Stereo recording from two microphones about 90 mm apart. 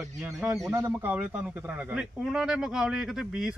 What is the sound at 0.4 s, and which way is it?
Speech, 15° right (ahead or behind).